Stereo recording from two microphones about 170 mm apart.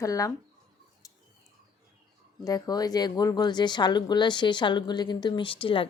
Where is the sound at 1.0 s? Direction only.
20° left (ahead or behind).